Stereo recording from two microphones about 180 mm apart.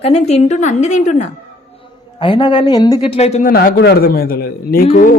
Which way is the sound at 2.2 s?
30° left (ahead or behind).